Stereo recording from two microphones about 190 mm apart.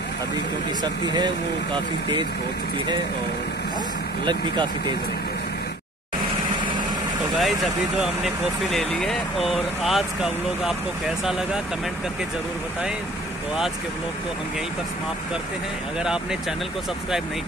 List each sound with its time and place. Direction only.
1.0 s speech: 20° right (ahead or behind)
4.2 s speech: 25° right (ahead or behind)
7.3 s speech: centre (ahead or behind)
16.0 s speech: 5° right (ahead or behind)